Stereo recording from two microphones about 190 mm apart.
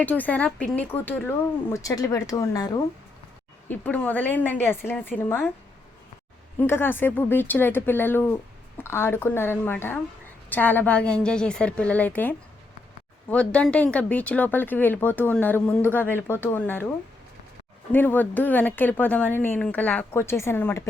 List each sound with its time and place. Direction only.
0.0 s speech: 10° left (ahead or behind)
3.7 s speech: 10° left (ahead or behind)
6.6 s speech: 10° left (ahead or behind)
17.9 s speech: 10° left (ahead or behind)